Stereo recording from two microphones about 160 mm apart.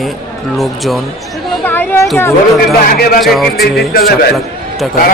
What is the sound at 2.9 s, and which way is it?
Speech, 70° left (ahead or behind).